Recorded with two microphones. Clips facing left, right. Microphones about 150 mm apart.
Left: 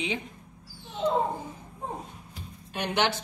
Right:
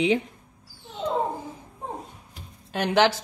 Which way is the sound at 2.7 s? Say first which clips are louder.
Right 6 dB; 90° right.